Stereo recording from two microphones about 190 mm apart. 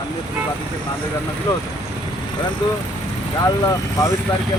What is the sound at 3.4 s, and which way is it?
Speech, 15° left (ahead or behind).